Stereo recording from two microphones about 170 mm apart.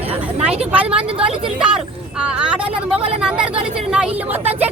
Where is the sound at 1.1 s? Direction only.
35° right (ahead or behind).